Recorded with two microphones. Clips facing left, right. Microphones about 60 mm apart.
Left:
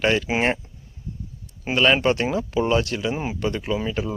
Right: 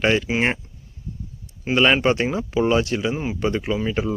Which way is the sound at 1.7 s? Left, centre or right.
Centre.